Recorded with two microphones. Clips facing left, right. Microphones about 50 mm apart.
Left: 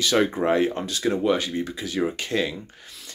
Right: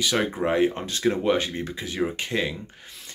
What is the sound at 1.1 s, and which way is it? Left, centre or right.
Speech, right.